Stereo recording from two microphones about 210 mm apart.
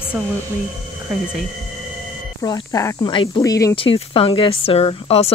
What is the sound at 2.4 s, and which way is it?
Speech, 15° left (ahead or behind).